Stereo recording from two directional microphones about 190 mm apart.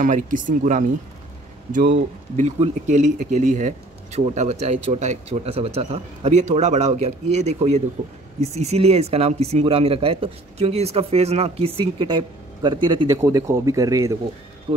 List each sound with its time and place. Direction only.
0.0 s a man's voice: 40° right (ahead or behind); by 14.1 s 15° right (ahead or behind)